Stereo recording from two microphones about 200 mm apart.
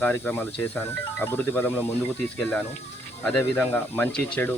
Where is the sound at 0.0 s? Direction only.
10° left (ahead or behind).